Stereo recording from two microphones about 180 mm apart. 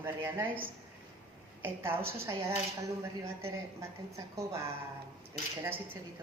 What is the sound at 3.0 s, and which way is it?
Speech, 15° right (ahead or behind).